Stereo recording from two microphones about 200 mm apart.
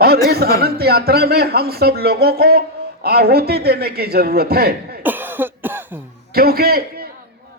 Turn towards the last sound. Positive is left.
turn(degrees=-50)  # may be behind; listen again after turning